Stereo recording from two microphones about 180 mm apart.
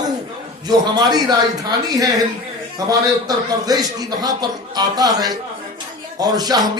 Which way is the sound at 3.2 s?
20° right (ahead or behind).